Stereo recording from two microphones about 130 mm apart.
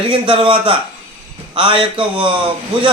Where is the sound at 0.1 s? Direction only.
40° right (ahead or behind).